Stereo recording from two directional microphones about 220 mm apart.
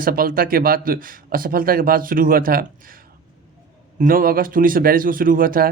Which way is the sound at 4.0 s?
40° right (ahead or behind).